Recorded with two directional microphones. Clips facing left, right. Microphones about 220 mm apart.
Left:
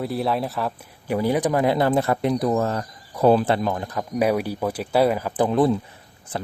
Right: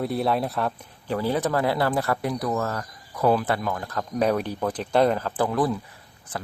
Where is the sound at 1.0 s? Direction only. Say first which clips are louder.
Left 3 dB; 15° left (ahead or behind).